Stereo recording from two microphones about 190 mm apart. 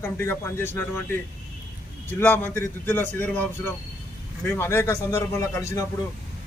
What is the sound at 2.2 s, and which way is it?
A man's voice, 10° left (ahead or behind).